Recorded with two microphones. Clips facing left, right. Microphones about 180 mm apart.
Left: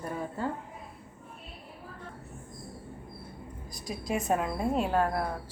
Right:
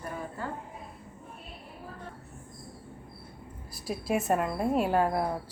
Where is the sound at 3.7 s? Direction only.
5° right (ahead or behind).